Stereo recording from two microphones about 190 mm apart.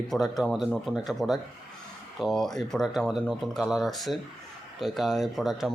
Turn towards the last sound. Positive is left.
turn(degrees=0)  # may be behind; listen again after turning